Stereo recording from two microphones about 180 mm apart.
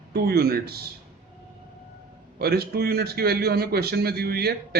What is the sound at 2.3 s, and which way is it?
A man's voice, 60° right (ahead or behind).